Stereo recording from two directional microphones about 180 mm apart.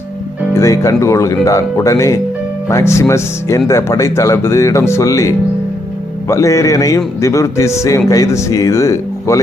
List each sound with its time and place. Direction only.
0.5 s a man's voice: 15° left (ahead or behind)